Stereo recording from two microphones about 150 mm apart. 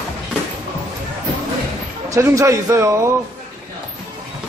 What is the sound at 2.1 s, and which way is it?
A man's voice, 20° right (ahead or behind).